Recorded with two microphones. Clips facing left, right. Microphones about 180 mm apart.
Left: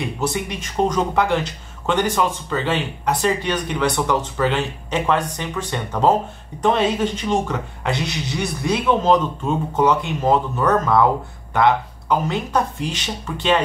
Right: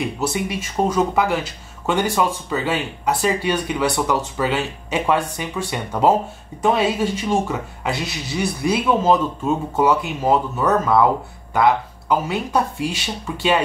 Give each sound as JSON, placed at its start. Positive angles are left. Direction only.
{"t": 0.0, "sound": "speech", "side_deg": -5}